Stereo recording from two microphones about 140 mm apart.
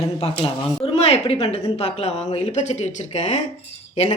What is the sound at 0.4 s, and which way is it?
A woman's voice, 45° left (ahead or behind).